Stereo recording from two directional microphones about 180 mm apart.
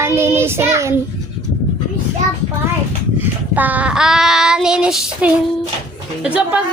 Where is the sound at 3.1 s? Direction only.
10° right (ahead or behind).